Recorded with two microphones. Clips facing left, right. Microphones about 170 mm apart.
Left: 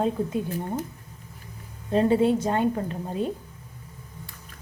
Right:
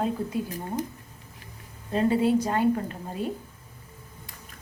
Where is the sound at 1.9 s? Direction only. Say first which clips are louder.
Left 2 dB; 25° left (ahead or behind).